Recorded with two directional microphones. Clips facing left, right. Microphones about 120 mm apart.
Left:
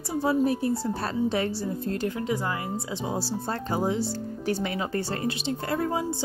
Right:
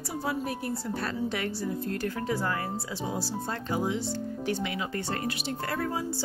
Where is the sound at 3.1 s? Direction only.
35° left (ahead or behind).